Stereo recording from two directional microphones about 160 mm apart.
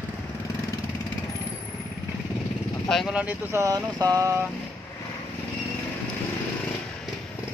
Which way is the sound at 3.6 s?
20° right (ahead or behind).